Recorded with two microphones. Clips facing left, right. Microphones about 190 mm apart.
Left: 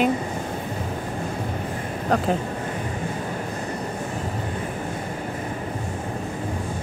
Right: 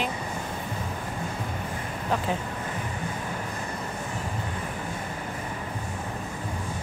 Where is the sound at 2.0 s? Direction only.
50° left (ahead or behind).